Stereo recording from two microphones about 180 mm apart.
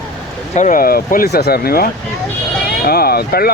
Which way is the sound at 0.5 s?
45° left (ahead or behind).